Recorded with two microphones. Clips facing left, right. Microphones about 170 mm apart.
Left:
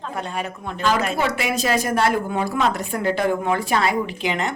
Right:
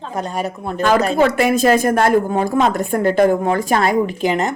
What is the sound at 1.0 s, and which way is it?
Speech, 35° right (ahead or behind).